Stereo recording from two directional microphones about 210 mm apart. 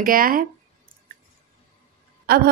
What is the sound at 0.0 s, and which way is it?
Speech, 40° right (ahead or behind).